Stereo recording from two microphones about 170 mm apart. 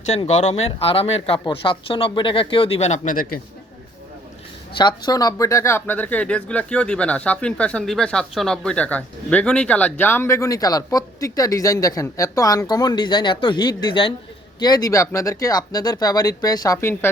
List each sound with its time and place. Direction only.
0.3 s speech: 40° left (ahead or behind)
4.7 s speech: 25° left (ahead or behind)